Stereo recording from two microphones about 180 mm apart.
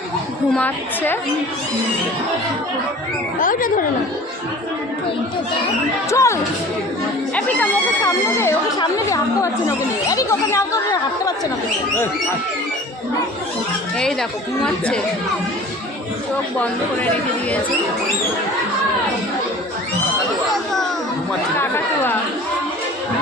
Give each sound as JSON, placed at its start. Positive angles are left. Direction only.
{"t": 0.5, "sound": "speech", "side_deg": 10}
{"t": 3.4, "sound": "speech", "side_deg": 50}
{"t": 6.1, "sound": "speech", "side_deg": 15}
{"t": 14.0, "sound": "speech", "side_deg": 5}